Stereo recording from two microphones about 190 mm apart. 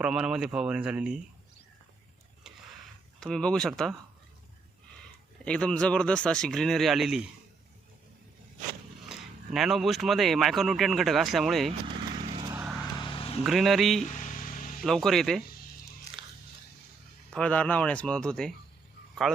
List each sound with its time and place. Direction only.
0.0 s speech: 5° right (ahead or behind)
3.2 s speech: 5° left (ahead or behind)
5.5 s speech: 5° left (ahead or behind)
9.0 s speech: centre (ahead or behind)
12.3 s vehicle: 25° right (ahead or behind)
12.5 s vehicle: 5° right (ahead or behind)
13.0 s vehicle: 25° left (ahead or behind)
13.4 s speech: centre (ahead or behind)
14.0 s a sound: 40° left (ahead or behind)
14.8 s speech: centre (ahead or behind)
16.1 s biting: 15° left (ahead or behind)
17.3 s speech: 5° left (ahead or behind)